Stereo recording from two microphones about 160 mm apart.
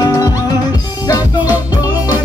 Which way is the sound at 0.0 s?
25° left (ahead or behind).